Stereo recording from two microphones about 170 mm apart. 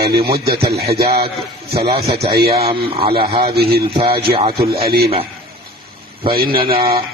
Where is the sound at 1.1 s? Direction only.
65° right (ahead or behind).